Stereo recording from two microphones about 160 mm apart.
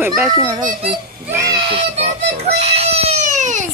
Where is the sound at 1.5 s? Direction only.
30° right (ahead or behind); by 3.7 s 50° right (ahead or behind).